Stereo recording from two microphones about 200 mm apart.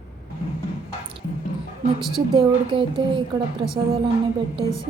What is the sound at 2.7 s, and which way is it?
Speech, 25° right (ahead or behind).